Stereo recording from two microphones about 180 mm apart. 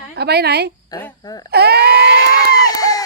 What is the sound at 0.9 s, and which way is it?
Speech, 20° left (ahead or behind).